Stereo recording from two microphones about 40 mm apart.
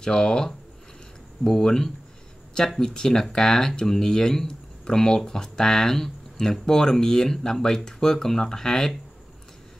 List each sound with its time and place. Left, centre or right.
0.0 s speech: centre